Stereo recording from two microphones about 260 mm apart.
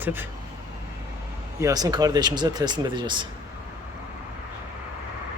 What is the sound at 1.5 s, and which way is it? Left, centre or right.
Speech, centre.